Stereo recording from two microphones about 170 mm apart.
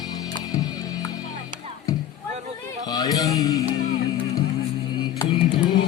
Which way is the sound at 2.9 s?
20° left (ahead or behind).